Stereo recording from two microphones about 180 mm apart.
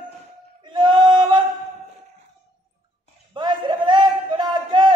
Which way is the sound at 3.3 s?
25° right (ahead or behind).